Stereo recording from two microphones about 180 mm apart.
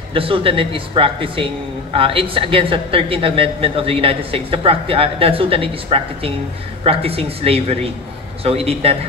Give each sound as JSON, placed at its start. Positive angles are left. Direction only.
{"t": 0.1, "sound": "a man's voice", "side_deg": -30}